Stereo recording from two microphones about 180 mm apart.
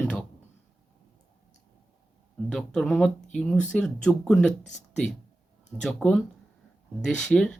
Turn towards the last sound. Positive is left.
turn(degrees=0)  # may be behind; listen again after turning